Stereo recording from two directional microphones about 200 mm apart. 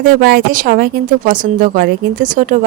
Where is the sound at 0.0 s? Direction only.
45° right (ahead or behind).